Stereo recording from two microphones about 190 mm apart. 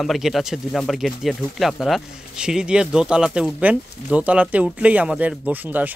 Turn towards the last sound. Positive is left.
turn(degrees=-10)  # may be behind; listen again after turning